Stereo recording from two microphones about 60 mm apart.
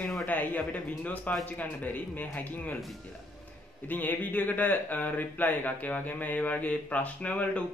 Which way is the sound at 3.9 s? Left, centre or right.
Left.